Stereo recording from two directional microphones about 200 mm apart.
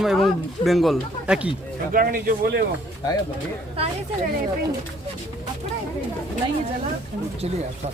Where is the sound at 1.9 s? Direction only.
50° right (ahead or behind).